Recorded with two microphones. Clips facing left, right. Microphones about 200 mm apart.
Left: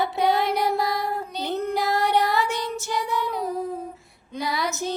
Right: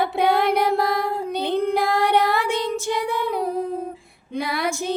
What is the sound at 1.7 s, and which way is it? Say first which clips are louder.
Music: right 1 dB; 55° right (ahead or behind).